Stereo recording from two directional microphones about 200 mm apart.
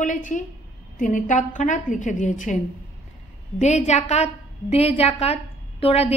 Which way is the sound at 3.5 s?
35° left (ahead or behind).